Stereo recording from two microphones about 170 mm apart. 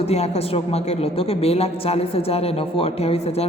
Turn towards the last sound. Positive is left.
turn(degrees=35)  # may be behind; listen again after turning